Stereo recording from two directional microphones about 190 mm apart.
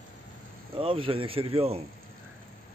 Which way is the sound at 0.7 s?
30° right (ahead or behind).